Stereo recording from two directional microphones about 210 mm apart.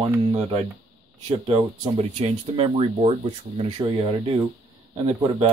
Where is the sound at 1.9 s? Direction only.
25° right (ahead or behind).